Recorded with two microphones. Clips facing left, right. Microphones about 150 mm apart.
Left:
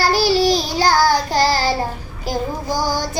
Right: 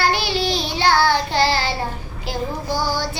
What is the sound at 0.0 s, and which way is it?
Child singing, 35° left (ahead or behind).